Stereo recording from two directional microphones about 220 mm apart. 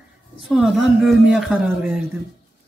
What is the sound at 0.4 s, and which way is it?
Speech, centre (ahead or behind).